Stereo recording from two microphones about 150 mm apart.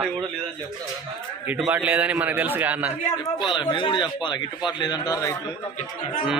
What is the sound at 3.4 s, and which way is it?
A man's voice, 30° left (ahead or behind).